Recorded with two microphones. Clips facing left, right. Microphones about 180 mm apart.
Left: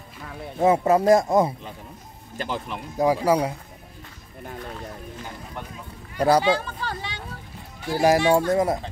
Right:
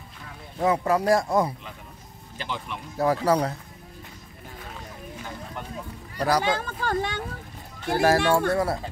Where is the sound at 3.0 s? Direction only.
10° left (ahead or behind).